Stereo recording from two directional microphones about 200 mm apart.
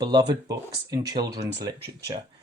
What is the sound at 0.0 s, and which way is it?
Speech, 25° right (ahead or behind).